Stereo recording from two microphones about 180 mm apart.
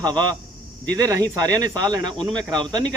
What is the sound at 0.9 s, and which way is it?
Speech, 20° right (ahead or behind).